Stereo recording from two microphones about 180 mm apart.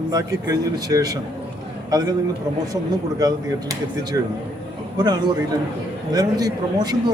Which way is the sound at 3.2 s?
20° right (ahead or behind).